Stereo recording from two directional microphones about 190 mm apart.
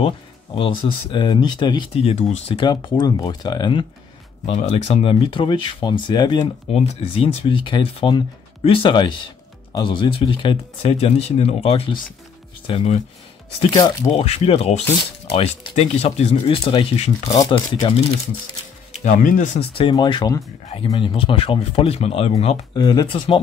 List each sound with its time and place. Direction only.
0.8 s speech: 25° left (ahead or behind)
4.5 s speech: 35° left (ahead or behind)
13.6 s speech: 20° left (ahead or behind)
18.9 s speech: 40° left (ahead or behind); by 23.4 s 25° left (ahead or behind)